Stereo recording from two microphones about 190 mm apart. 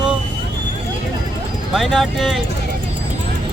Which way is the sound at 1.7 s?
Centre (ahead or behind).